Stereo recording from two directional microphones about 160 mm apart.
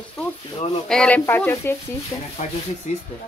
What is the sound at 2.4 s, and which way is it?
Speech, 45° left (ahead or behind).